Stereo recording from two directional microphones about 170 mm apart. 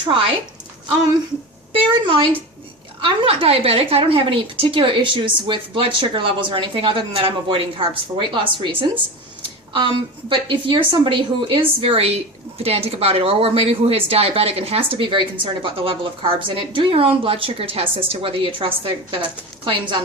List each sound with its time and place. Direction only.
1.7 s a woman's voice: 30° right (ahead or behind)